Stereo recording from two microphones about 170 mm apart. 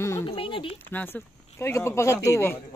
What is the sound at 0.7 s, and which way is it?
Speech, 10° left (ahead or behind).